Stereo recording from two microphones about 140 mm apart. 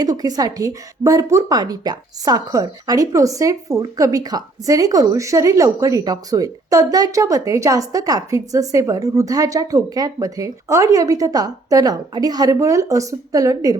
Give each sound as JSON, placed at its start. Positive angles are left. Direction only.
{"t": 0.0, "sound": "a woman's voice", "side_deg": -25}